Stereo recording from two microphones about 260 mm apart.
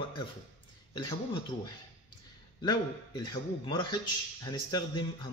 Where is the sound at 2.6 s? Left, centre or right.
Centre.